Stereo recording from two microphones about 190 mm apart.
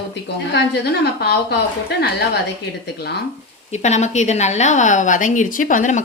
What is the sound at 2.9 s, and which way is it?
Speech, 60° left (ahead or behind).